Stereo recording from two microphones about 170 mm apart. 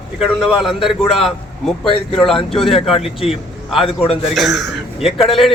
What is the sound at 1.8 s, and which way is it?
Speech, 30° left (ahead or behind).